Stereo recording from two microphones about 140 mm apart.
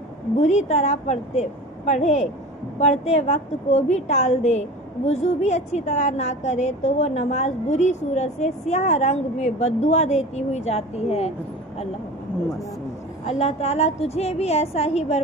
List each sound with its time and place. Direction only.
0.4 s a woman's voice: 55° left (ahead or behind)
13.2 s a woman's voice: 50° left (ahead or behind)